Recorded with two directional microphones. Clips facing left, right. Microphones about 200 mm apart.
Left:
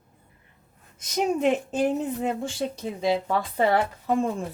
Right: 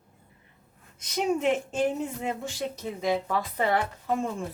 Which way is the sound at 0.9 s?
45° left (ahead or behind).